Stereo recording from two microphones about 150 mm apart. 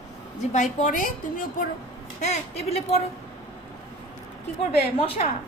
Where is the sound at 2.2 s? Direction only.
45° left (ahead or behind).